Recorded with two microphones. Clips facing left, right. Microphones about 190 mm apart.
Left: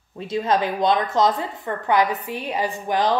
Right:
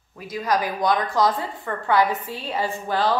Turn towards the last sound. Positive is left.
turn(degrees=15)  # may be behind; listen again after turning